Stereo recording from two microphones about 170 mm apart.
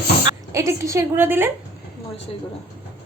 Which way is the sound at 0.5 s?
15° right (ahead or behind).